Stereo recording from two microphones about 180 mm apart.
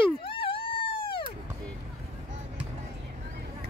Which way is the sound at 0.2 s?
30° left (ahead or behind).